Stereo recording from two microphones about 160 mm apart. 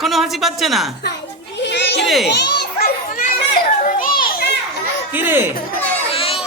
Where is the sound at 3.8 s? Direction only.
60° left (ahead or behind).